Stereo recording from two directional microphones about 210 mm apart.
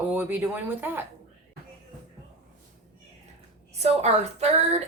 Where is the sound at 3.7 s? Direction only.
30° right (ahead or behind).